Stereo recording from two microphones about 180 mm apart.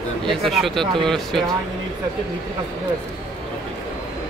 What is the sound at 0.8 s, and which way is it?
Speech, 25° right (ahead or behind).